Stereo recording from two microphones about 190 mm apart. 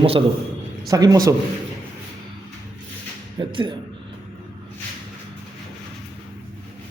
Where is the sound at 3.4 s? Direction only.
20° right (ahead or behind).